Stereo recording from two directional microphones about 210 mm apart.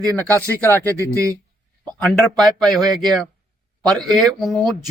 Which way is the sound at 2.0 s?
Centre (ahead or behind).